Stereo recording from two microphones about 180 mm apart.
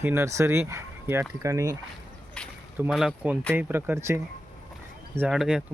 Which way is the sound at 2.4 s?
5° left (ahead or behind).